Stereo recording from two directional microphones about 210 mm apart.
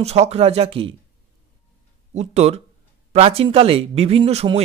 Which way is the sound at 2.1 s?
30° right (ahead or behind).